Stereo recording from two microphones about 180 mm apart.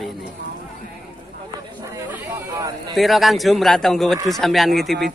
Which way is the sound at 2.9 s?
Centre (ahead or behind).